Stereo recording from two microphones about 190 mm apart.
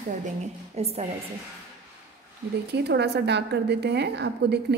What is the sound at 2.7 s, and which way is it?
A woman's voice, 60° right (ahead or behind).